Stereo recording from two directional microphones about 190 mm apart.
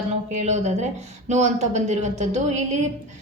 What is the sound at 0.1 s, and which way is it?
Speech, 35° right (ahead or behind).